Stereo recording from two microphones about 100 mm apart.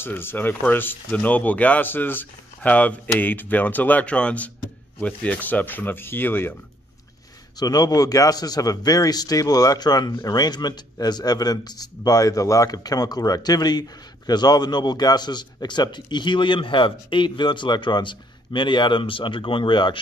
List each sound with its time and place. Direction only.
0.0 s speech: 20° left (ahead or behind)
7.5 s a man's voice: 40° left (ahead or behind)